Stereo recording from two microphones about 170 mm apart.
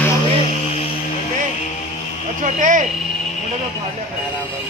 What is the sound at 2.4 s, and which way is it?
Speech, 50° right (ahead or behind).